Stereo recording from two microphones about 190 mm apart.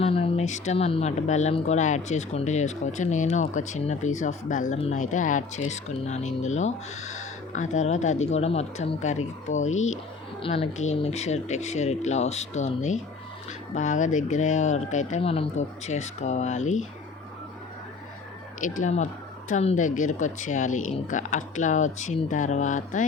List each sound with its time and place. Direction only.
0.0 s speech: 30° left (ahead or behind)
18.6 s speech: 40° left (ahead or behind)